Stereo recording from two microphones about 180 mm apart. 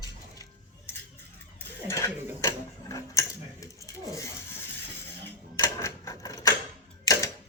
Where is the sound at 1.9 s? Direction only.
15° left (ahead or behind).